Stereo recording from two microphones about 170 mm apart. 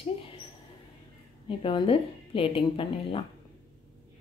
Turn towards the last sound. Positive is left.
turn(degrees=30)  # may be behind; listen again after turning